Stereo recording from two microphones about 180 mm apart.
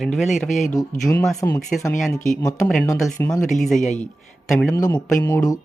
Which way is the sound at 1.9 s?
Centre (ahead or behind).